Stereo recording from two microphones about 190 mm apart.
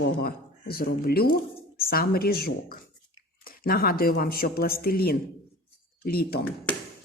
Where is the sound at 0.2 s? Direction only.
55° left (ahead or behind).